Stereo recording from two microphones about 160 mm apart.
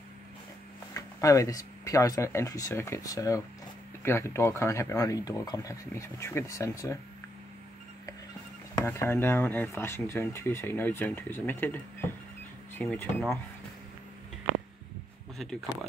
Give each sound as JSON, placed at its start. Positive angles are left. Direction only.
{"t": 0.9, "sound": "speech", "side_deg": 20}
{"t": 8.7, "sound": "speech", "side_deg": 15}
{"t": 15.3, "sound": "speech", "side_deg": 0}